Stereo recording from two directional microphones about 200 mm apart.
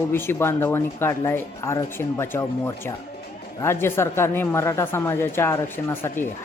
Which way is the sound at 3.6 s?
10° left (ahead or behind).